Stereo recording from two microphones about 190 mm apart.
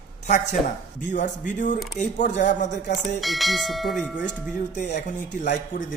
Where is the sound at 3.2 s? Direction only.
Centre (ahead or behind).